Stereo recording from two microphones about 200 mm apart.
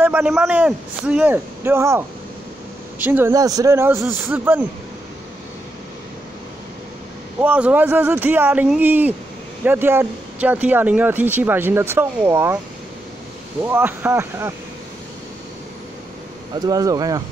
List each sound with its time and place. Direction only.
0.0 s speech: 5° right (ahead or behind)
7.4 s speech: 5° right (ahead or behind)
13.6 s speech: 10° right (ahead or behind)
16.6 s speech: 20° right (ahead or behind)